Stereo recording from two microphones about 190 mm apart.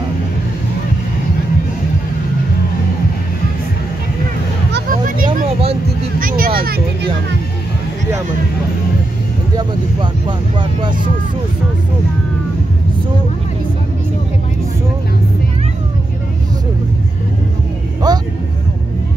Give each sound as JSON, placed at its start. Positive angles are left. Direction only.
{"t": 5.0, "sound": "a sound", "side_deg": -45}
{"t": 10.2, "sound": "vehicle", "side_deg": -25}
{"t": 18.1, "sound": "music", "side_deg": -20}